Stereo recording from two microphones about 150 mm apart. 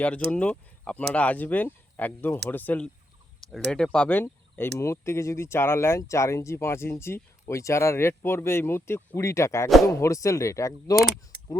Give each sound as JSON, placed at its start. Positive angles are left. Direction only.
{"t": 0.3, "sound": "speech", "side_deg": 10}
{"t": 10.9, "sound": "speech", "side_deg": 0}